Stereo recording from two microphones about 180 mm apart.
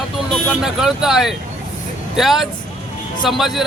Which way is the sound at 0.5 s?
5° right (ahead or behind).